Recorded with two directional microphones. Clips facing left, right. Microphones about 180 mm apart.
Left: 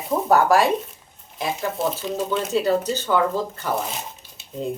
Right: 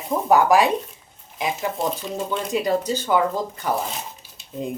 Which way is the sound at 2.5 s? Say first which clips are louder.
Even; 10° right (ahead or behind).